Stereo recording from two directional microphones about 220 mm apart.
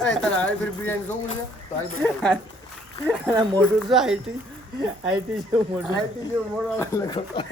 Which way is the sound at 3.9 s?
Centre (ahead or behind).